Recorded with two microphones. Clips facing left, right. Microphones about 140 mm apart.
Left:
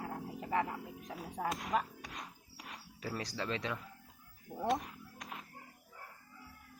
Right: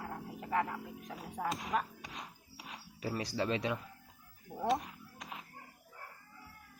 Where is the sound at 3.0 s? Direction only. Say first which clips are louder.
Right 4 dB; 10° right (ahead or behind).